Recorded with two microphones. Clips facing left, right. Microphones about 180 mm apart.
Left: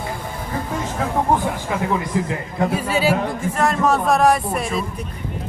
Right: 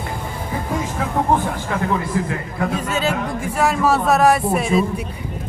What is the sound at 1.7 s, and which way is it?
A man's voice, 20° left (ahead or behind).